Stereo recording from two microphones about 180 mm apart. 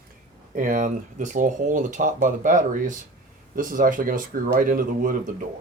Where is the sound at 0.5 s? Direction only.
45° right (ahead or behind).